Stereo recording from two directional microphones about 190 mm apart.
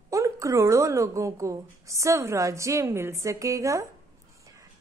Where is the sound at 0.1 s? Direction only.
15° right (ahead or behind).